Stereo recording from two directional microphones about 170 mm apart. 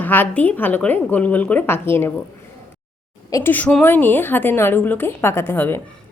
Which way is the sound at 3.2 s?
20° left (ahead or behind).